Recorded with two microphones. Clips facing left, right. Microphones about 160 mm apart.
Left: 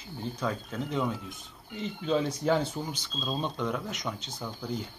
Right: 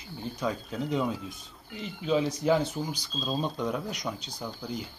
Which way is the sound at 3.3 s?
10° right (ahead or behind).